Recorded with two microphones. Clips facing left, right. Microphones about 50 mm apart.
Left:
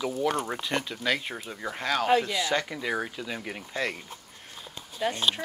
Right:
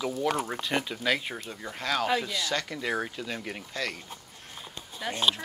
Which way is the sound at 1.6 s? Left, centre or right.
Centre.